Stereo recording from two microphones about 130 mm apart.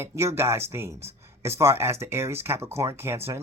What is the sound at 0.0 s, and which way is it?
Speech, 20° right (ahead or behind).